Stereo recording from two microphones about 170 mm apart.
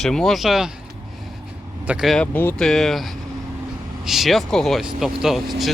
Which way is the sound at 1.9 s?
Centre (ahead or behind).